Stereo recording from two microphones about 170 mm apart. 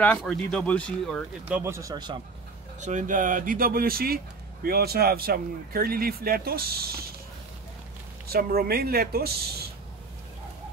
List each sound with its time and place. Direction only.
0.2 s speech: 5° left (ahead or behind)
1.5 s speech: 15° right (ahead or behind)
2.8 s speech: 45° right (ahead or behind); by 7.1 s 65° right (ahead or behind)
8.3 s speech: 65° right (ahead or behind)